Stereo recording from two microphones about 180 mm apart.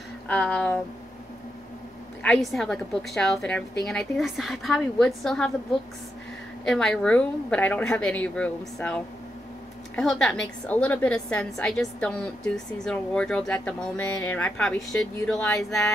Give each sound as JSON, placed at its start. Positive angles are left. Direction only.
{"t": 0.3, "sound": "speech", "side_deg": 5}
{"t": 2.2, "sound": "a woman's voice", "side_deg": 0}
{"t": 6.6, "sound": "a woman's voice", "side_deg": 5}